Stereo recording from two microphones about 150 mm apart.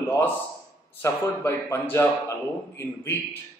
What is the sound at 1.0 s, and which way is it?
A man's voice, 15° left (ahead or behind).